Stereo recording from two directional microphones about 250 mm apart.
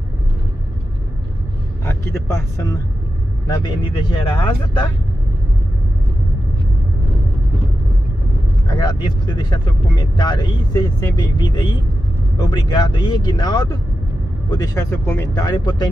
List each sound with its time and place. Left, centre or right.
1.9 s speech: centre
8.6 s speech: centre